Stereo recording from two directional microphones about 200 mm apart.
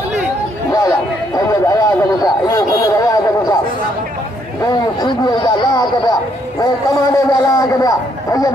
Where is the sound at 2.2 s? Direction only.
20° left (ahead or behind).